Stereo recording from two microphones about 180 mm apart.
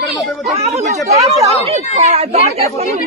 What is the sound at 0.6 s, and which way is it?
Chatter, 40° right (ahead or behind).